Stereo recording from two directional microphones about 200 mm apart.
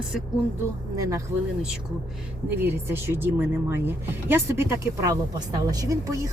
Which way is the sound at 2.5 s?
10° right (ahead or behind).